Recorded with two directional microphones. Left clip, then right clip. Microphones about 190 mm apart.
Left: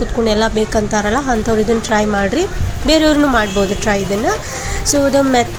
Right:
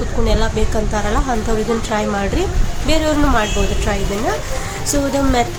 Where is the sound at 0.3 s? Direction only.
25° left (ahead or behind).